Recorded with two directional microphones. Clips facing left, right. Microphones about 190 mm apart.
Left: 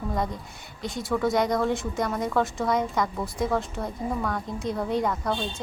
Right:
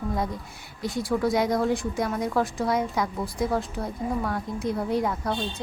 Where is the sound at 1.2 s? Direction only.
Centre (ahead or behind).